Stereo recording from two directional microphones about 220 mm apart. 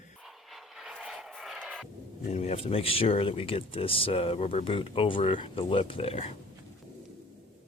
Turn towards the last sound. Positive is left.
turn(degrees=25)  # may be behind; listen again after turning